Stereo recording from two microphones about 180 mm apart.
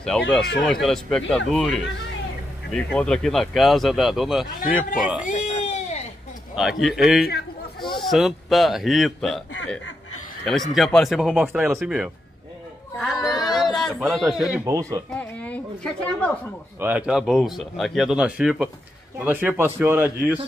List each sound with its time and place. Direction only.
0.1 s speech: 5° left (ahead or behind)
4.5 s a man's voice: 50° left (ahead or behind)
5.2 s baby cry: 45° left (ahead or behind)
6.5 s speech: centre (ahead or behind)
7.8 s a sound: 25° left (ahead or behind)
8.1 s speech: centre (ahead or behind)
10.4 s speech: centre (ahead or behind)
12.9 s chatter: centre (ahead or behind)
13.2 s a sound: 20° left (ahead or behind)
13.5 s speech: centre (ahead or behind)
14.6 s speech: 20° right (ahead or behind)
15.0 s speech: 5° left (ahead or behind)
16.8 s speech: 5° right (ahead or behind)